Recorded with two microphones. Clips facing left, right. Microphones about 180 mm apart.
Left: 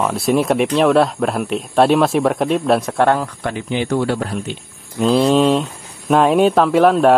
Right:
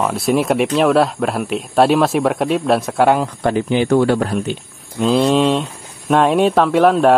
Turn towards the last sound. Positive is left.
turn(degrees=0)  # may be behind; listen again after turning